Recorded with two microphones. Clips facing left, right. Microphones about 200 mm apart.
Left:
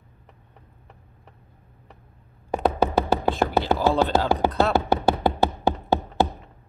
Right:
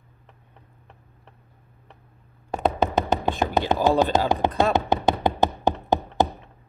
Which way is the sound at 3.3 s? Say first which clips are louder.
Left 1 dB; 15° right (ahead or behind).